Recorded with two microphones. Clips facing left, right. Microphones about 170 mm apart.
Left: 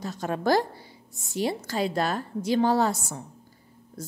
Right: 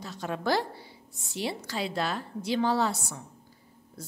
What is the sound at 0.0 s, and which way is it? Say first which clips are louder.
A woman's voice: left 4 dB; 45° left (ahead or behind).